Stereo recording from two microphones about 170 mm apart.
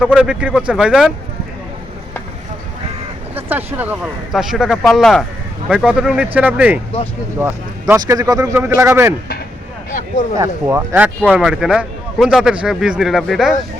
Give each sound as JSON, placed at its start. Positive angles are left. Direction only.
{"t": 0.0, "sound": "speech", "side_deg": -5}
{"t": 3.3, "sound": "speech", "side_deg": -10}
{"t": 10.3, "sound": "speech", "side_deg": -15}